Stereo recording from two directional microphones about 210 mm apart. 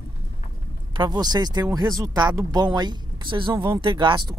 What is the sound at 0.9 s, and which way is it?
Speech, 20° right (ahead or behind).